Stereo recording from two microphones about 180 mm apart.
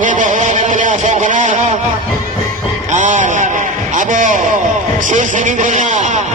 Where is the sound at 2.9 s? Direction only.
40° right (ahead or behind).